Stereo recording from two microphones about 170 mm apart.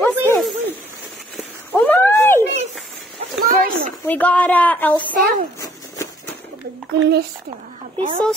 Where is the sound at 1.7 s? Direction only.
10° left (ahead or behind).